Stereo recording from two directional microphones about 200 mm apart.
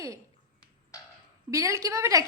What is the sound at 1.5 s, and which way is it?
Speech, 15° right (ahead or behind).